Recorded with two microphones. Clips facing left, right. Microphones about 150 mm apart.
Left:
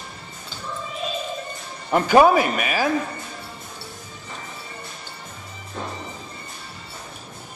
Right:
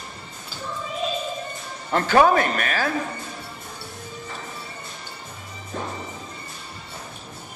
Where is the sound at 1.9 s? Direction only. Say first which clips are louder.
Left 2 dB; 10° left (ahead or behind).